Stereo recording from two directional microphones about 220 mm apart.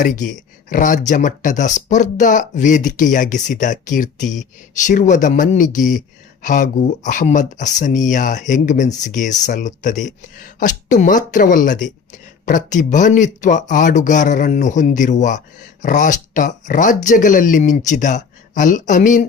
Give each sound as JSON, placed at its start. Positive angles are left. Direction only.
{"t": 0.0, "sound": "speech", "side_deg": 35}